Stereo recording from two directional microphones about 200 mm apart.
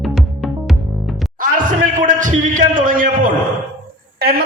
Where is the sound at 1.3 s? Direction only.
40° right (ahead or behind).